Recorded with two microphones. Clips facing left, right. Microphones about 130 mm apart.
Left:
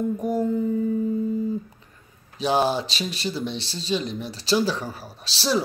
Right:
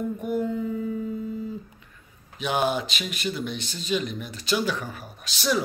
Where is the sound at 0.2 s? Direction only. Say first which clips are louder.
Left 3 dB; 40° left (ahead or behind).